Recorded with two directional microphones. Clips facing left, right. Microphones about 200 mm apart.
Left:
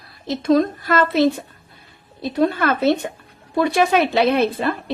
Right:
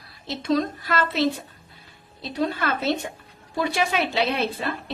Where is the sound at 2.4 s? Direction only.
55° left (ahead or behind).